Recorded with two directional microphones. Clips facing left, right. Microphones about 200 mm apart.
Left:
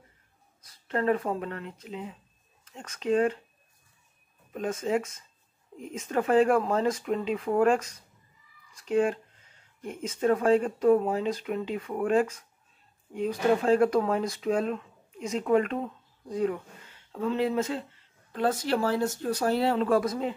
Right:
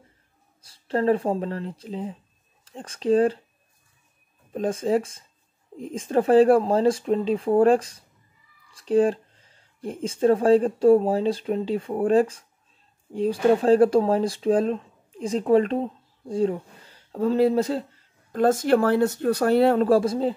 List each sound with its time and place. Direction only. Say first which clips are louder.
0.6 s speech: right 5 dB; 30° right (ahead or behind)
4.5 s speech: right 5 dB; 30° right (ahead or behind); by 19.9 s 55° right (ahead or behind)
19.9 s speech: right 5 dB; 30° right (ahead or behind)